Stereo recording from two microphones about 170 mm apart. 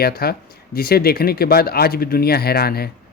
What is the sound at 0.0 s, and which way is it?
Speech, 65° left (ahead or behind).